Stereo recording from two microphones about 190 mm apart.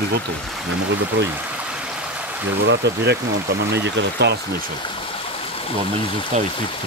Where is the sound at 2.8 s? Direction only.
65° right (ahead or behind).